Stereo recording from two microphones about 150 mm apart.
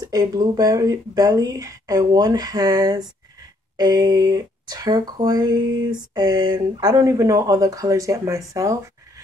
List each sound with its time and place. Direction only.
0.0 s speech: 25° right (ahead or behind)